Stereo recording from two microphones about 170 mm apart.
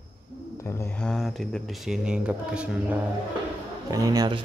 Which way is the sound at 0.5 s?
15° left (ahead or behind).